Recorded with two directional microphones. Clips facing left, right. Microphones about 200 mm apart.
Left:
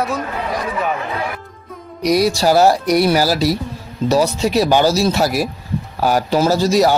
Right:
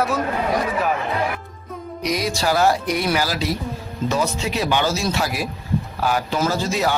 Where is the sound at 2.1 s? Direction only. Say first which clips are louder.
Left 8 dB; 35° left (ahead or behind).